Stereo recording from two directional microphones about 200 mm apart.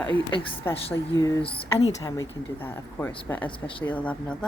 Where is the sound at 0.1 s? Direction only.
25° left (ahead or behind).